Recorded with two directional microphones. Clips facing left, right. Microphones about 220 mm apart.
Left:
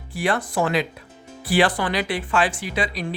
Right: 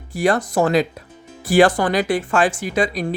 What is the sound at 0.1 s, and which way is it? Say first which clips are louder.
Speech: right 5 dB; 40° right (ahead or behind).